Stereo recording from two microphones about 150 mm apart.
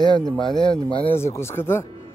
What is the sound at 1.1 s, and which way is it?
Speech, 15° left (ahead or behind).